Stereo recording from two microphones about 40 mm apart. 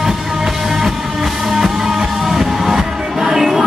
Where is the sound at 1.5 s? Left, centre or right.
Centre.